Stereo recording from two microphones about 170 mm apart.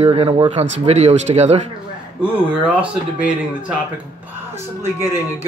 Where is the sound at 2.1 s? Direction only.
10° right (ahead or behind).